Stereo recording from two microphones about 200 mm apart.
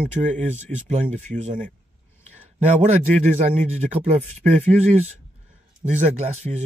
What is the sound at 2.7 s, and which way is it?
Speech, 35° right (ahead or behind).